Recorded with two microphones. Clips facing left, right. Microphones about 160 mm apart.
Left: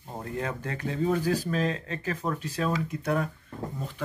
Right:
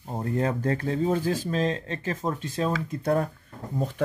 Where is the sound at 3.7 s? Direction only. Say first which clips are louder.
Right 8 dB; 45° right (ahead or behind).